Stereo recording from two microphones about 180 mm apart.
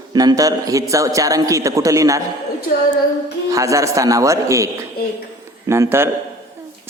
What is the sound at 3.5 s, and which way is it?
A man's voice, 20° right (ahead or behind).